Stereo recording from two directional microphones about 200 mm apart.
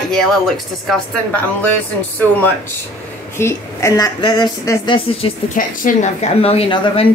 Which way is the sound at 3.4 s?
15° left (ahead or behind).